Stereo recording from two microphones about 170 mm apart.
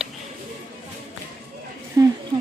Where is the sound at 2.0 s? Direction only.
20° right (ahead or behind).